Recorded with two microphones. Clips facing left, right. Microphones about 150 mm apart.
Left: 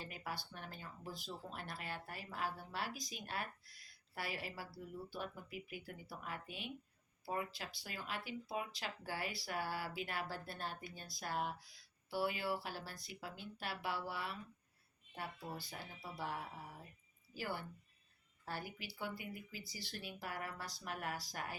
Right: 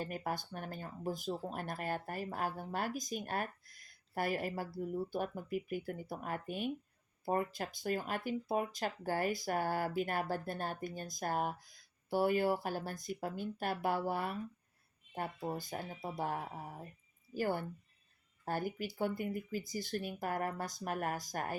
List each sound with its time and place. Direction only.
0.0 s speech: 50° right (ahead or behind)